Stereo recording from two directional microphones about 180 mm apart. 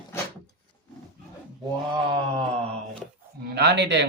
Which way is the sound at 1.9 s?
30° right (ahead or behind).